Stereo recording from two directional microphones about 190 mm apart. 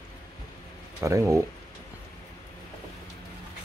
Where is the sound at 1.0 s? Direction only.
15° right (ahead or behind).